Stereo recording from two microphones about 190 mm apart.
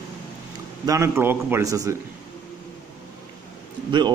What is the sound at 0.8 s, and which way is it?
A man's voice, 15° right (ahead or behind).